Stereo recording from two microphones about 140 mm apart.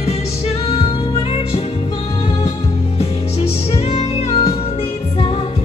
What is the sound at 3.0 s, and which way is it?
Music, 45° left (ahead or behind).